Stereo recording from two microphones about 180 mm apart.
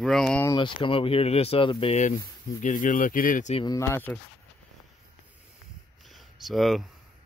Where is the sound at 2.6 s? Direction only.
45° left (ahead or behind).